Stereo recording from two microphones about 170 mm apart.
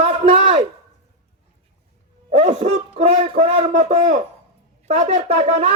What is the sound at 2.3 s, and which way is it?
Speech, 40° right (ahead or behind).